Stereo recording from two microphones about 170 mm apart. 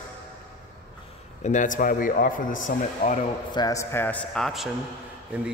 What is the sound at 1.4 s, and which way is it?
A man's voice, 45° left (ahead or behind).